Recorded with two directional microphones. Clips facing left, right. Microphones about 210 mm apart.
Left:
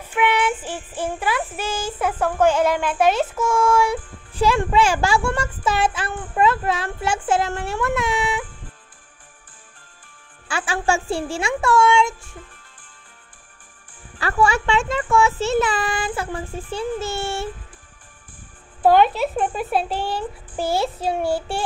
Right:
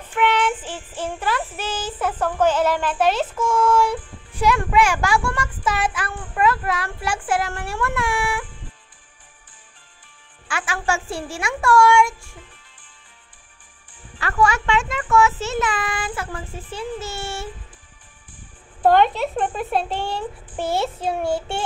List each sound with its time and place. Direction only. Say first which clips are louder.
0.0 s child singing: even; 10° left (ahead or behind)
4.4 s a child's voice: left 1 dB; 30° left (ahead or behind)
10.5 s a child's voice: left 3 dB; 30° left (ahead or behind)
14.2 s a child's voice: left 1 dB; 30° left (ahead or behind)
18.8 s speech: left 1 dB; 5° left (ahead or behind)